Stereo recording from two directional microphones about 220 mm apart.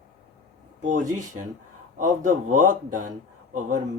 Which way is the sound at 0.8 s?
35° right (ahead or behind).